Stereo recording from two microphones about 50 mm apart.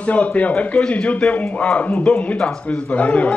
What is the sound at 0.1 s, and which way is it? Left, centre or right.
A man's voice, left.